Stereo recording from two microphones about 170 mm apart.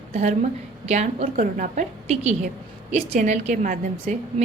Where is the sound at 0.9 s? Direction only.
40° right (ahead or behind).